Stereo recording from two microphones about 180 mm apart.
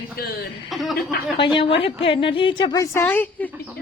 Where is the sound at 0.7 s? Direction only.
Centre (ahead or behind).